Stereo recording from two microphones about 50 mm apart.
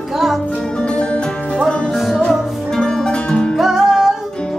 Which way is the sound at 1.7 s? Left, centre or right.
Centre.